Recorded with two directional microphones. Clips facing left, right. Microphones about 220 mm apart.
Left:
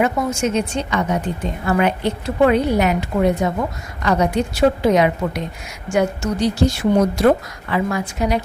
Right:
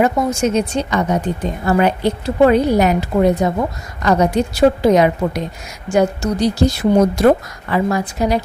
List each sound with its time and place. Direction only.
0.0 s speech: 35° right (ahead or behind)